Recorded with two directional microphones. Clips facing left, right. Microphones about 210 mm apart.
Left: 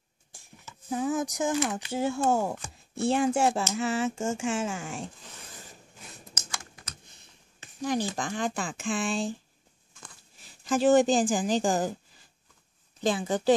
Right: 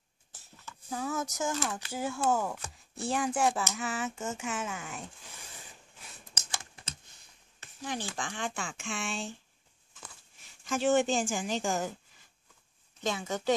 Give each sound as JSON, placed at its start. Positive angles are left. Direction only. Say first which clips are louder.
{"t": 0.3, "sound": "speech", "louder": "left 1 dB", "side_deg": 15}
{"t": 6.3, "sound": "computer keyboard", "louder": "right 1 dB", "side_deg": -30}
{"t": 7.8, "sound": "a woman's voice", "louder": "left 8 dB", "side_deg": 40}
{"t": 10.4, "sound": "a woman's voice", "louder": "left 6 dB", "side_deg": 35}
{"t": 13.0, "sound": "a woman's voice", "louder": "left 6 dB", "side_deg": 30}